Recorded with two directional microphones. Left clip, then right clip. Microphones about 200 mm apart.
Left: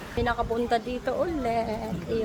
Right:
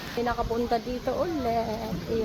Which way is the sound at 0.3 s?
5° left (ahead or behind).